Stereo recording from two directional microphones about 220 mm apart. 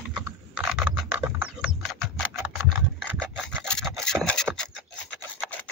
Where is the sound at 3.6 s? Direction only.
5° left (ahead or behind).